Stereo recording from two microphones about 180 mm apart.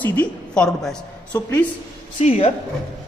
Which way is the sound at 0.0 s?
10° left (ahead or behind).